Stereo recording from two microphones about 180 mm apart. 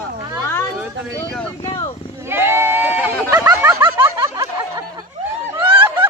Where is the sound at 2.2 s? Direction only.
15° right (ahead or behind).